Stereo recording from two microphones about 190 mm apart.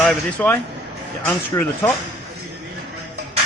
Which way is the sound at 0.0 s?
10° left (ahead or behind).